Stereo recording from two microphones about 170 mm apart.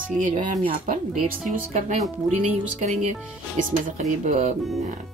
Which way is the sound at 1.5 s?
45° right (ahead or behind).